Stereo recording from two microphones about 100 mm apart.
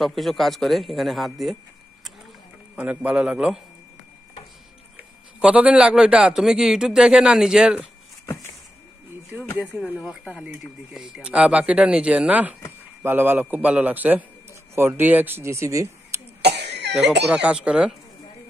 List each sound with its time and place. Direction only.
0.0 s a man's voice: centre (ahead or behind)
2.7 s a man's voice: 15° right (ahead or behind)
5.4 s a man's voice: 10° right (ahead or behind)
9.8 s a man's voice: 10° right (ahead or behind); by 16.2 s 30° right (ahead or behind)
16.9 s a man's voice: 10° right (ahead or behind)